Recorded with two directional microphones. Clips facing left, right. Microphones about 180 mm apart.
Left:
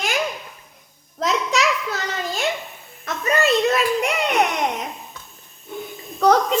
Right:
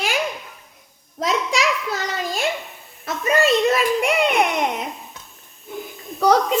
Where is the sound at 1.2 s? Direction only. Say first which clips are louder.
Even; 10° right (ahead or behind).